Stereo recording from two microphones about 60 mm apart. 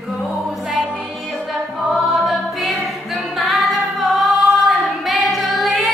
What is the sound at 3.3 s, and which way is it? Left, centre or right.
Music, centre.